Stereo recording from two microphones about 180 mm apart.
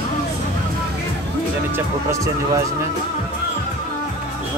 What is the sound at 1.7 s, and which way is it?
Speech, 15° right (ahead or behind).